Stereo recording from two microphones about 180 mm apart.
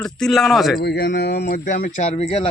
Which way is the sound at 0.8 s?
60° left (ahead or behind).